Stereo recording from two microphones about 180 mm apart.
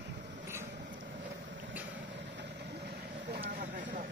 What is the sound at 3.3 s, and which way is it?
Vehicle, 55° right (ahead or behind).